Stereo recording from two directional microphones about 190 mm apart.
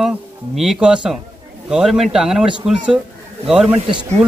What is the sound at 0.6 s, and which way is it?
Speech, 5° right (ahead or behind).